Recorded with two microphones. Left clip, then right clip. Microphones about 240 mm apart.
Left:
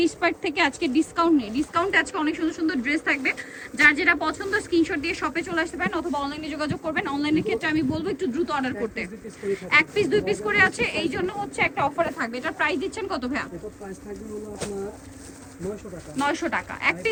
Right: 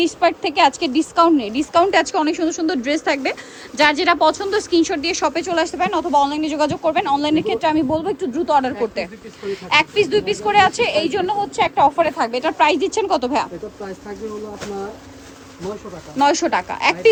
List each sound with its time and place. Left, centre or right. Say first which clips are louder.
0.0 s a woman's voice: right 6 dB; centre
16.2 s speech: right 9 dB; centre